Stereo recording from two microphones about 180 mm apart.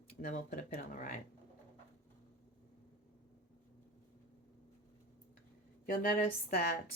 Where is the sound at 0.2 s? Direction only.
50° left (ahead or behind).